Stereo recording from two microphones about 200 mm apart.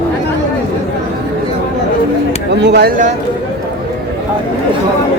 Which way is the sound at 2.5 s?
60° right (ahead or behind).